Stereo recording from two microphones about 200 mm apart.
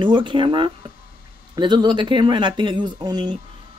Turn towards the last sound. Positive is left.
turn(degrees=-20)  # may be behind; listen again after turning